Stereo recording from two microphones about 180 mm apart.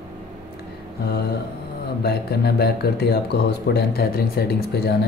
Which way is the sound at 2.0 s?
60° left (ahead or behind).